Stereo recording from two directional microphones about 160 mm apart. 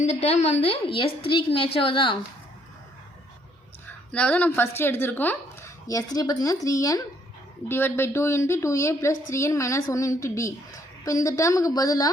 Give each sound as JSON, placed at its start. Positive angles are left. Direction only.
{"t": 0.0, "sound": "a woman's voice", "side_deg": 40}
{"t": 4.1, "sound": "a woman's voice", "side_deg": 5}